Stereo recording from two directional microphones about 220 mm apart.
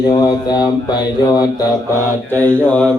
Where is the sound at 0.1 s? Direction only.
20° left (ahead or behind).